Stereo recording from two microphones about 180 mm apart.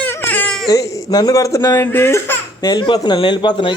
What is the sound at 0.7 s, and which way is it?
Speech, 20° left (ahead or behind).